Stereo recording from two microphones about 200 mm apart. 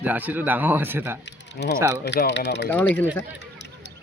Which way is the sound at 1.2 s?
60° left (ahead or behind).